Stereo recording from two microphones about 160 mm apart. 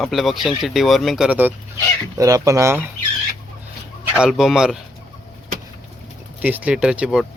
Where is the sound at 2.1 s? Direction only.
20° right (ahead or behind).